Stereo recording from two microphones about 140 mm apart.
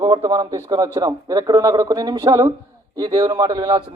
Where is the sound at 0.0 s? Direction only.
35° right (ahead or behind).